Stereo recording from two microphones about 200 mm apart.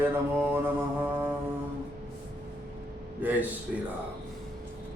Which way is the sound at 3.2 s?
10° right (ahead or behind).